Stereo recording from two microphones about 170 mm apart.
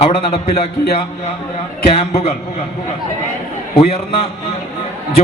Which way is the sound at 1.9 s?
35° left (ahead or behind).